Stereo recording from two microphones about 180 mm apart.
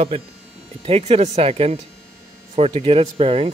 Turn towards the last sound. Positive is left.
turn(degrees=-30)  # may be behind; listen again after turning